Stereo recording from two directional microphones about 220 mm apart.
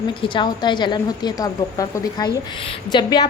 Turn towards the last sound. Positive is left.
turn(degrees=20)  # may be behind; listen again after turning